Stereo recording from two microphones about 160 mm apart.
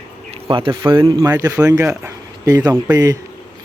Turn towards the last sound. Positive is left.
turn(degrees=-20)  # may be behind; listen again after turning